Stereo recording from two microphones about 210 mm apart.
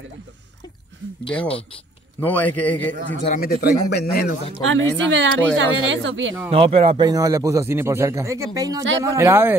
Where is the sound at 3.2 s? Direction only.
40° left (ahead or behind).